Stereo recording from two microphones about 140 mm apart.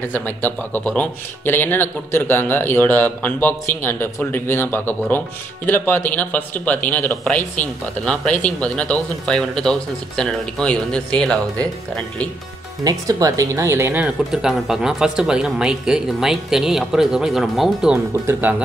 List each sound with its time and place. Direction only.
0.1 s speech: 15° left (ahead or behind)
12.8 s speech: 25° right (ahead or behind)
14.0 s speech: 5° right (ahead or behind)
18.2 s speech: 15° right (ahead or behind)